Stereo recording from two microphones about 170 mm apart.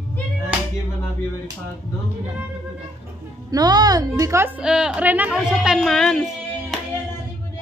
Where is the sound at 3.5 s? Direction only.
25° right (ahead or behind).